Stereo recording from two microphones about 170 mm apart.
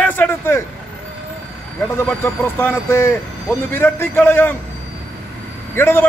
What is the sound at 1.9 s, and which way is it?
A man's voice, 15° left (ahead or behind).